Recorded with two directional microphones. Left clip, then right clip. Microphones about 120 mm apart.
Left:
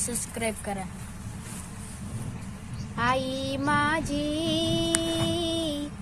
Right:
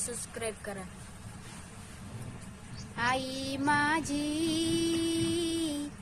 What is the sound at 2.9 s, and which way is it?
Music, 40° right (ahead or behind).